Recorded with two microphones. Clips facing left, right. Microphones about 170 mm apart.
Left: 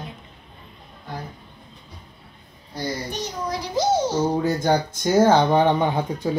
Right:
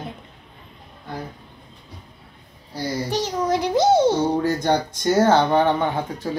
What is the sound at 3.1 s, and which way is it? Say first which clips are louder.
A child's voice: right 7 dB; 90° right.